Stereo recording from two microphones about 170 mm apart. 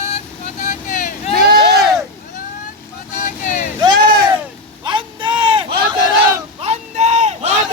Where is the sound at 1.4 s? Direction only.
65° right (ahead or behind).